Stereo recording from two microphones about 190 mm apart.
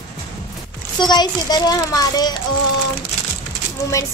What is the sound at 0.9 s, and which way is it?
A child's voice, 20° left (ahead or behind).